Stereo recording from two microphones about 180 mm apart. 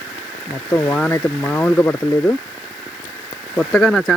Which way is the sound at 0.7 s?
10° left (ahead or behind).